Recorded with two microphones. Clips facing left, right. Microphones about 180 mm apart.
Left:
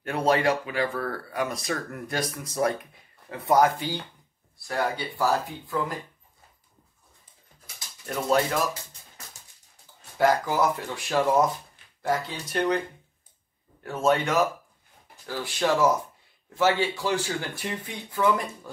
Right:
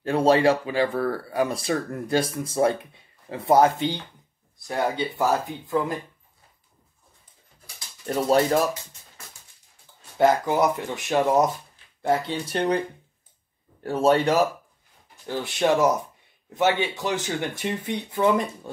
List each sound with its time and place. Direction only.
0.0 s speech: 30° right (ahead or behind)
8.1 s a man's voice: 35° right (ahead or behind)
10.1 s speech: 25° right (ahead or behind)
13.8 s a man's voice: 35° right (ahead or behind)
15.2 s speech: 20° right (ahead or behind)